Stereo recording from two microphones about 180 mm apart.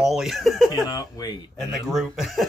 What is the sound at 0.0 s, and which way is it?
Speech, centre (ahead or behind).